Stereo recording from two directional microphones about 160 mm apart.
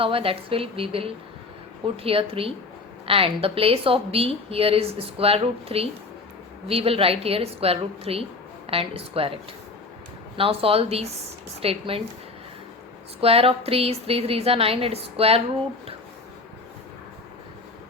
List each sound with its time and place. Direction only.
0.0 s a woman's voice: 35° right (ahead or behind)
13.2 s a woman's voice: 35° right (ahead or behind)